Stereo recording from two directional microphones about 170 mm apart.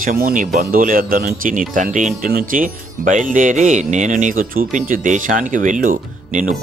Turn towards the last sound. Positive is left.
turn(degrees=-45)  # may be behind; listen again after turning